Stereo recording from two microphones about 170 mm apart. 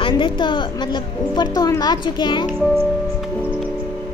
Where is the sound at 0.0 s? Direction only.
30° left (ahead or behind).